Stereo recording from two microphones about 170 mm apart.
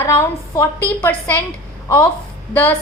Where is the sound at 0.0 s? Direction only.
15° left (ahead or behind).